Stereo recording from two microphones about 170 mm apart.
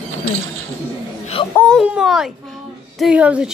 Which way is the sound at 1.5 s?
10° left (ahead or behind).